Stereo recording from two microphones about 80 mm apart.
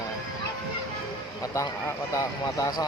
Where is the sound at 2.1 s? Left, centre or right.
Left.